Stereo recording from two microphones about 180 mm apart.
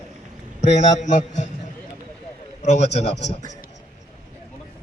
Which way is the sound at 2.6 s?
40° left (ahead or behind).